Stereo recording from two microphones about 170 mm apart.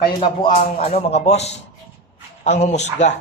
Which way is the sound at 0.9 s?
40° left (ahead or behind).